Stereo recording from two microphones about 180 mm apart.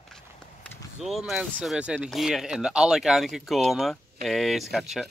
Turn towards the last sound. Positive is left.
turn(degrees=0)  # may be behind; listen again after turning